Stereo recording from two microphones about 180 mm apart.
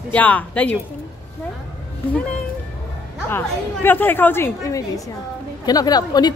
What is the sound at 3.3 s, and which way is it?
A woman's voice, 10° left (ahead or behind).